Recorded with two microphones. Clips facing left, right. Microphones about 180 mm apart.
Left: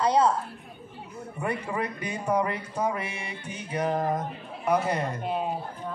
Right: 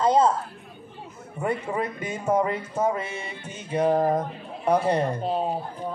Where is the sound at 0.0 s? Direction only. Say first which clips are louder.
Right 3 dB; 25° right (ahead or behind).